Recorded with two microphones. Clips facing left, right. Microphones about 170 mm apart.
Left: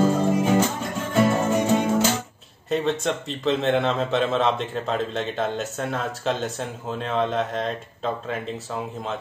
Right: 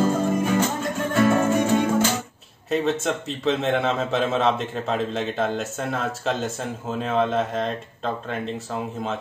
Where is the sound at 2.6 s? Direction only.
Centre (ahead or behind).